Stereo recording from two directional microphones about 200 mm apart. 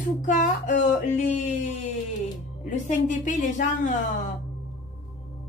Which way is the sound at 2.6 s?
40° left (ahead or behind).